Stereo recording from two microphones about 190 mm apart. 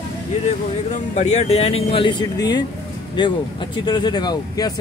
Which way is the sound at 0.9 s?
35° left (ahead or behind).